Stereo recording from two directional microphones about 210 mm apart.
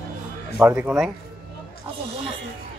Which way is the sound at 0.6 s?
10° right (ahead or behind).